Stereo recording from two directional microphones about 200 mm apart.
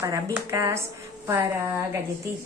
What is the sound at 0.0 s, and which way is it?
Speech, 15° right (ahead or behind).